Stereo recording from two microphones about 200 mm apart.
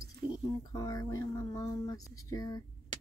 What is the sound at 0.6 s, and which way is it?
Speech, 15° left (ahead or behind).